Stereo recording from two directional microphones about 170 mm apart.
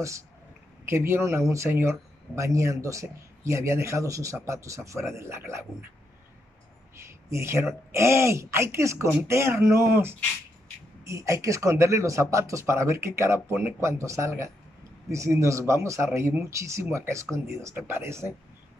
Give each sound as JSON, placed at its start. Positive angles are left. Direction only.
{"t": 0.8, "sound": "speech", "side_deg": -15}
{"t": 7.0, "sound": "speech", "side_deg": -15}